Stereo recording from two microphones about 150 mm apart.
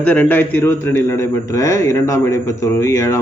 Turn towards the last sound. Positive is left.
turn(degrees=20)  # may be behind; listen again after turning